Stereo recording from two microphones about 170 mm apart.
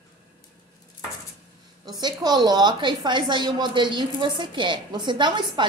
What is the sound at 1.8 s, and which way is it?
A woman's voice, 25° right (ahead or behind).